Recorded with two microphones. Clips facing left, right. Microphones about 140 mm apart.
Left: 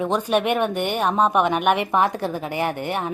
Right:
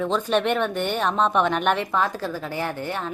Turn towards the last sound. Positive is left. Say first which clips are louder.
# left 4 dB
turn(degrees=15)  # may be behind; listen again after turning